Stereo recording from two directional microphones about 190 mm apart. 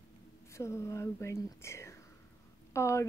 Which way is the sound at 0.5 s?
15° left (ahead or behind).